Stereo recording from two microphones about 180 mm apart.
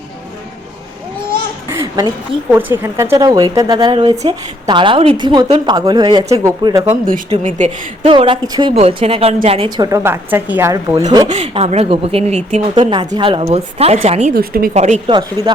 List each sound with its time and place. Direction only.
1.7 s a sound: 15° right (ahead or behind)
2.5 s a woman's voice: 10° right (ahead or behind)
7.1 s a woman's voice: 40° right (ahead or behind)
8.1 s a woman's voice: 25° right (ahead or behind)
11.3 s a woman's voice: 35° right (ahead or behind)
14.3 s a woman's voice: 55° right (ahead or behind)
14.7 s a woman's voice: 40° right (ahead or behind)